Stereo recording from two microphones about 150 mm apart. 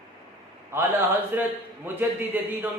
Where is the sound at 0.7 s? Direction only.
15° right (ahead or behind).